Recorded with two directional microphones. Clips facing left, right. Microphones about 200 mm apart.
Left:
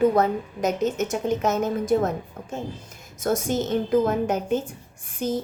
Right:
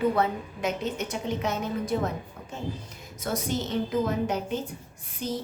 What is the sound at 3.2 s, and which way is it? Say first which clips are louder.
A woman's voice: left 6 dB; 45° left (ahead or behind).